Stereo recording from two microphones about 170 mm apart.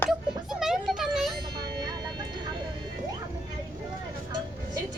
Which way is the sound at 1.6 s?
25° right (ahead or behind).